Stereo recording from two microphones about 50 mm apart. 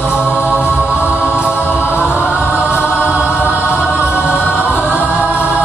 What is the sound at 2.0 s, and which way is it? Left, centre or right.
Choir, right.